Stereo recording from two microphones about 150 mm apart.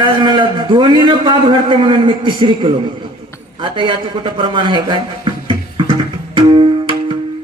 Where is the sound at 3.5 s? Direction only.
35° right (ahead or behind).